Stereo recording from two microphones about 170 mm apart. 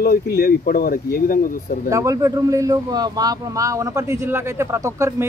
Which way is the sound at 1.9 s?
20° right (ahead or behind).